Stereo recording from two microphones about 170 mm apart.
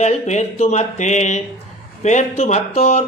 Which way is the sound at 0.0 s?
40° left (ahead or behind).